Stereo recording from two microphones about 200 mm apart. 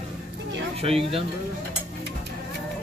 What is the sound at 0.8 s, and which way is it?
Speech, 30° right (ahead or behind).